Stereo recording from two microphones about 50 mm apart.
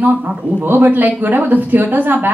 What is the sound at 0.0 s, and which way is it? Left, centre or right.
A woman's voice, right.